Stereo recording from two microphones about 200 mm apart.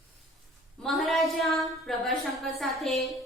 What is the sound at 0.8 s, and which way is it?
A woman's voice, centre (ahead or behind).